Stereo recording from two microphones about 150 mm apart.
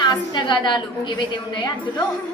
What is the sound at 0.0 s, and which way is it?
A woman's voice, 30° left (ahead or behind).